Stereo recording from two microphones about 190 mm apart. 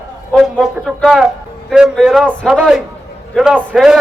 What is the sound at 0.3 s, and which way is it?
A man's voice, 5° right (ahead or behind).